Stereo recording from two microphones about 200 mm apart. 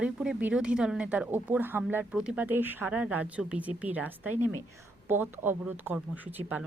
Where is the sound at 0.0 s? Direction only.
5° right (ahead or behind).